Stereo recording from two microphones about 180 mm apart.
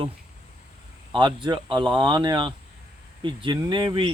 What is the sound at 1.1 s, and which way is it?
Speech, 25° right (ahead or behind).